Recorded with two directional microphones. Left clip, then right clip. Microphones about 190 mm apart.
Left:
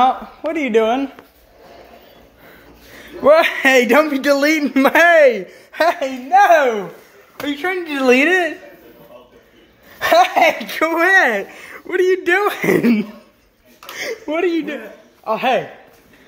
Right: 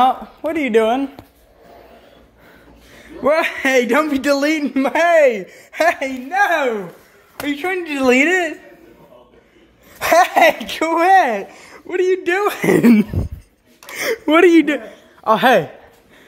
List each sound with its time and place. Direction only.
0.0 s speech: 15° right (ahead or behind)
3.0 s a man's voice: 5° right (ahead or behind)
4.1 s speech: 10° right (ahead or behind)
4.7 s a woman's voice: 10° left (ahead or behind)
6.4 s speech: 10° left (ahead or behind)
7.4 s speech: 15° right (ahead or behind)
9.9 s speech: 15° right (ahead or behind)
14.2 s speech: 40° right (ahead or behind)